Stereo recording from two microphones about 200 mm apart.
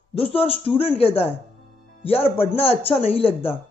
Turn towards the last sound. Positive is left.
turn(degrees=30)  # may be behind; listen again after turning